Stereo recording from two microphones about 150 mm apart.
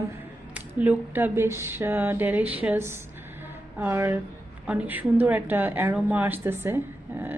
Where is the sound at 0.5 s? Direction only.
10° right (ahead or behind).